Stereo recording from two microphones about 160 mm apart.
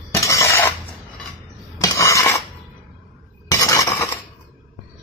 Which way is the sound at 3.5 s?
20° left (ahead or behind).